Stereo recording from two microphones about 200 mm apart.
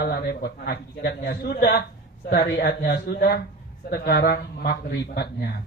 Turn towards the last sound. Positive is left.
turn(degrees=55)  # may be behind; listen again after turning